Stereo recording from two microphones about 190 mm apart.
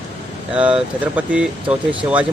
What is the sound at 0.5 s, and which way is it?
Speech, 5° right (ahead or behind).